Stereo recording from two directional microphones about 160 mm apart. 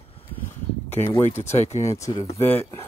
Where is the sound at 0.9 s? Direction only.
15° left (ahead or behind).